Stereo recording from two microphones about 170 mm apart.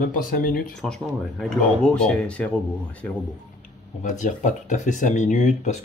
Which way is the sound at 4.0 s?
45° left (ahead or behind).